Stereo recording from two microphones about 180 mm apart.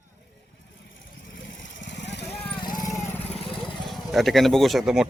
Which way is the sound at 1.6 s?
75° left (ahead or behind).